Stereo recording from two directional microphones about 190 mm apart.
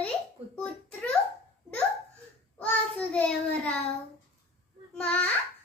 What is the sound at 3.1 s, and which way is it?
Child singing, 5° left (ahead or behind).